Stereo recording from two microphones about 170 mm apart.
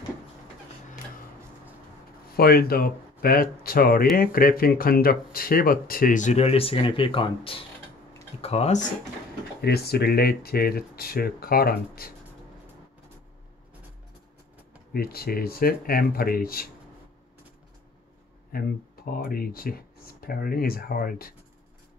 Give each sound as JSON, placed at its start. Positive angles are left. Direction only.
{"t": 2.3, "sound": "speech", "side_deg": 65}
{"t": 9.6, "sound": "speech", "side_deg": 70}
{"t": 14.9, "sound": "speech", "side_deg": 65}
{"t": 18.5, "sound": "speech", "side_deg": 60}